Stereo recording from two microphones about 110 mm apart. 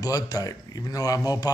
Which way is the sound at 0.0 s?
35° left (ahead or behind).